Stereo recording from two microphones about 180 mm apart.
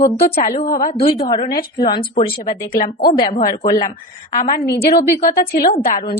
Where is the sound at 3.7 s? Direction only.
20° left (ahead or behind).